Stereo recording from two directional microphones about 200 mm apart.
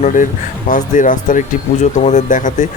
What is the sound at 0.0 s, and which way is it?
Speech, 40° left (ahead or behind).